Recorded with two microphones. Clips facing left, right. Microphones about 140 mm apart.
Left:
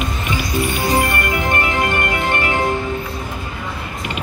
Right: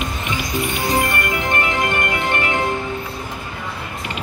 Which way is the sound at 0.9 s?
20° left (ahead or behind).